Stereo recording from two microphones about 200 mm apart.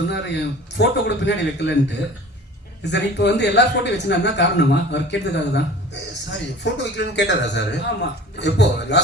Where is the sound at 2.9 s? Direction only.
60° left (ahead or behind).